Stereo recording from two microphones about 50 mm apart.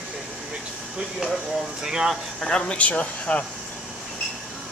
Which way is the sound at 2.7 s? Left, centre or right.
Left.